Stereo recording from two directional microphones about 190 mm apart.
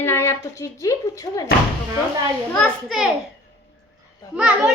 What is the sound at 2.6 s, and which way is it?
Speech, centre (ahead or behind).